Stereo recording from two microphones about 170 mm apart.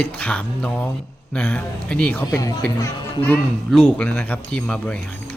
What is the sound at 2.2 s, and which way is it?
A man's voice, 20° left (ahead or behind).